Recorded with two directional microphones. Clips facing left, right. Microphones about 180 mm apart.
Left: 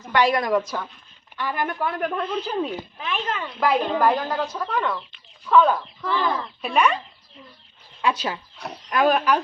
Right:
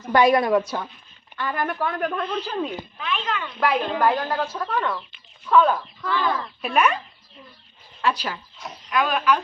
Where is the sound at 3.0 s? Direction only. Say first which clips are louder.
Right 1 dB; 35° left (ahead or behind).